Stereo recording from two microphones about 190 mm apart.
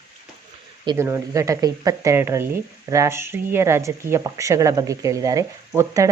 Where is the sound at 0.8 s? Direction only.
15° right (ahead or behind).